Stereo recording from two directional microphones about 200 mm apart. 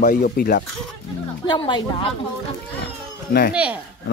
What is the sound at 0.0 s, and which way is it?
Speech, 50° left (ahead or behind).